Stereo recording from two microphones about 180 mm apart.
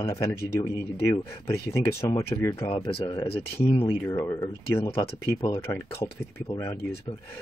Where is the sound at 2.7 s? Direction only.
30° left (ahead or behind).